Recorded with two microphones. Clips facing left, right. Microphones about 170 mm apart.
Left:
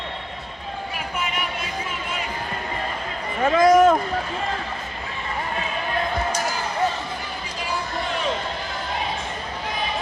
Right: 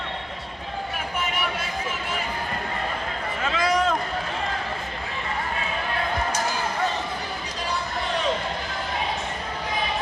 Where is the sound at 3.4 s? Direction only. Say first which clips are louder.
Left 9 dB; 45° left (ahead or behind).